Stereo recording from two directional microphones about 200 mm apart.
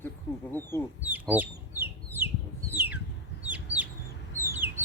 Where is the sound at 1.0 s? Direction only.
10° right (ahead or behind).